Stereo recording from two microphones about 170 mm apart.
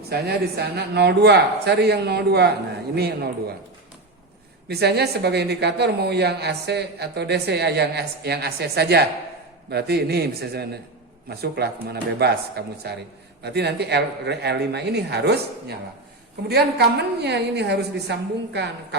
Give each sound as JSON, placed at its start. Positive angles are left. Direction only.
{"t": 0.1, "sound": "a woman's voice", "side_deg": -70}
{"t": 4.7, "sound": "a woman's voice", "side_deg": -75}